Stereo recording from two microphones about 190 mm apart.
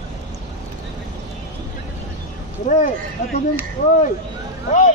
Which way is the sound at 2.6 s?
40° left (ahead or behind).